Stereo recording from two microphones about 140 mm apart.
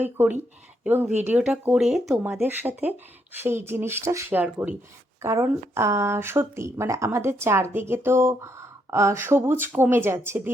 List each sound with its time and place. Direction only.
0.0 s speech: 15° right (ahead or behind)
5.2 s speech: 20° right (ahead or behind)